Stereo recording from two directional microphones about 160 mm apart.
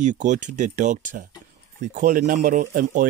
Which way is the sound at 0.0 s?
50° right (ahead or behind).